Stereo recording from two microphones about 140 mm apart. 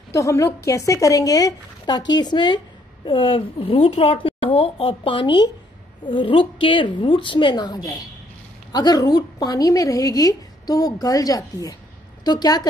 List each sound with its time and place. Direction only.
0.1 s a woman's voice: 20° left (ahead or behind)